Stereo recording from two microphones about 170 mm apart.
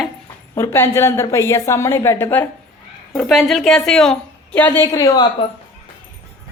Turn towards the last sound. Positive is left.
turn(degrees=20)  # may be behind; listen again after turning